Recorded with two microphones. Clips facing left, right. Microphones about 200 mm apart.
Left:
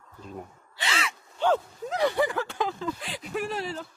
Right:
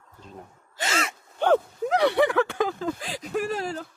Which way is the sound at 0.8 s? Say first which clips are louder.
Right 3 dB; 45° right (ahead or behind).